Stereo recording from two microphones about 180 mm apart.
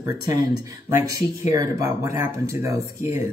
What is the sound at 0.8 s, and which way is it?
Speech, 15° right (ahead or behind).